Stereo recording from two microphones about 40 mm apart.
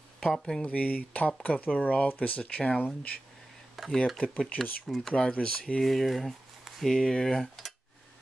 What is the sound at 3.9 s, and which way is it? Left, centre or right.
Speech, centre.